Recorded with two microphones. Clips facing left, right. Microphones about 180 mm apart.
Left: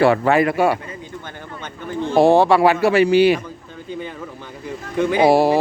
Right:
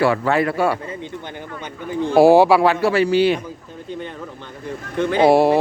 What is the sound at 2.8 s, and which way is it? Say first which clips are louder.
Speech: left 2 dB; 15° left (ahead or behind).